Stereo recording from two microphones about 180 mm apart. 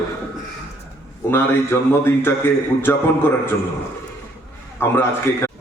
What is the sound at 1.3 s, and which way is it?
A man's voice, 15° left (ahead or behind).